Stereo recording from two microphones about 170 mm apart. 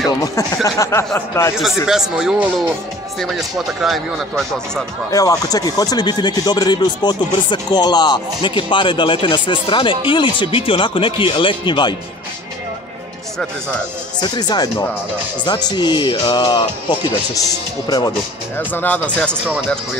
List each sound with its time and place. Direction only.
0.7 s speech: 20° left (ahead or behind)
1.9 s speech: 5° right (ahead or behind)
5.1 s speech: 20° left (ahead or behind)
14.2 s speech: 25° left (ahead or behind)
17.8 s speech: 25° left (ahead or behind)
18.6 s speech: 10° left (ahead or behind)